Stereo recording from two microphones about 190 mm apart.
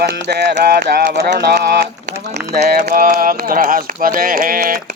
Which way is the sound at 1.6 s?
60° right (ahead or behind).